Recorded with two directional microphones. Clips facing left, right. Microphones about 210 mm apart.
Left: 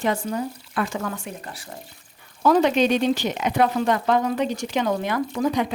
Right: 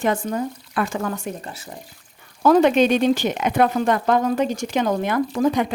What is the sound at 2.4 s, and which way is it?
Speech, 55° right (ahead or behind).